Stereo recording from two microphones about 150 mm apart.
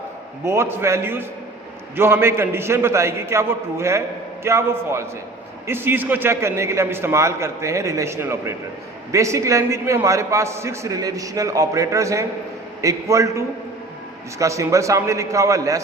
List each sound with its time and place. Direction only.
0.4 s a man's voice: 15° right (ahead or behind)